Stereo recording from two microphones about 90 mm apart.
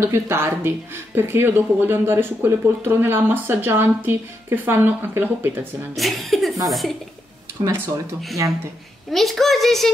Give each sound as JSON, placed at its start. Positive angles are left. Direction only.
{"t": 0.0, "sound": "speech", "side_deg": -30}
{"t": 5.9, "sound": "a child's voice", "side_deg": 0}
{"t": 7.6, "sound": "speech", "side_deg": -25}
{"t": 9.1, "sound": "a child's voice", "side_deg": 0}